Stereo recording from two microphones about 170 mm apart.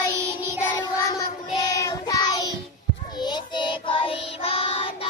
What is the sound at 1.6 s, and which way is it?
Child singing, 20° left (ahead or behind).